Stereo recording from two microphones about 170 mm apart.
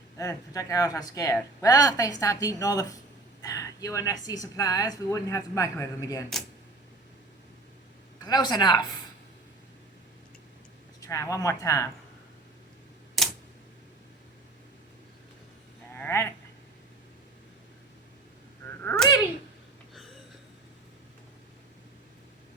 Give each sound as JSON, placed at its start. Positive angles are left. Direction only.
{"t": 0.2, "sound": "speech", "side_deg": 20}
{"t": 8.2, "sound": "speech", "side_deg": 25}
{"t": 11.0, "sound": "speech", "side_deg": 20}
{"t": 13.2, "sound": "a sound", "side_deg": 0}
{"t": 16.0, "sound": "sheep", "side_deg": 15}
{"t": 18.9, "sound": "a sound", "side_deg": 10}